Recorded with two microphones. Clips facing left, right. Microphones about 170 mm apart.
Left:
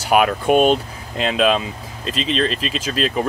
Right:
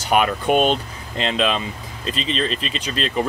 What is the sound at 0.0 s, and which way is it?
Speech, 5° left (ahead or behind).